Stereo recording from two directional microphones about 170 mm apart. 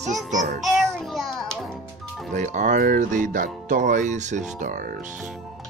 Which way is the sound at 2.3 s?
45° right (ahead or behind).